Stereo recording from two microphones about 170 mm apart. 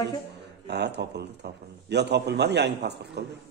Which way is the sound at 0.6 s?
80° right.